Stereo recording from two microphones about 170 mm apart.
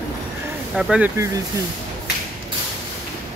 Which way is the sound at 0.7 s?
5° right (ahead or behind).